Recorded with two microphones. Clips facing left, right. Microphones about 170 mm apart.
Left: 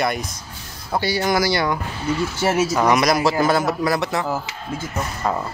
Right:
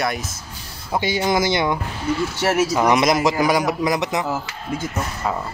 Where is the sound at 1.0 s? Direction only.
20° right (ahead or behind).